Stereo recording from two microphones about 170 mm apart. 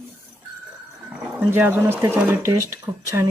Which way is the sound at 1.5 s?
10° right (ahead or behind).